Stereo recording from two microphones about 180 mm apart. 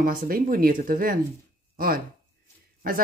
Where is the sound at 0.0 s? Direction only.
50° right (ahead or behind).